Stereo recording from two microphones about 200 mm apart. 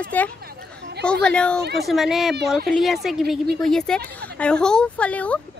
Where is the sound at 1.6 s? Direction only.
55° right (ahead or behind).